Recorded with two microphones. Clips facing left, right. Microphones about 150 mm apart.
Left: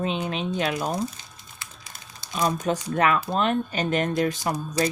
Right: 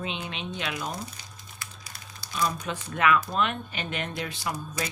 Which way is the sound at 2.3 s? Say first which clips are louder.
Left 5 dB; 45° left (ahead or behind).